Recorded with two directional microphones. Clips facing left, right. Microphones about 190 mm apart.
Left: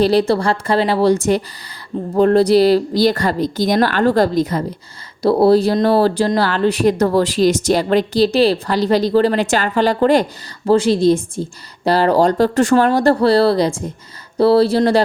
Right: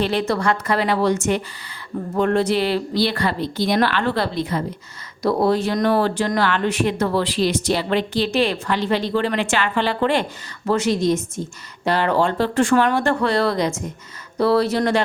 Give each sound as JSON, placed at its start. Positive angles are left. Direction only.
{"t": 0.0, "sound": "speech", "side_deg": 35}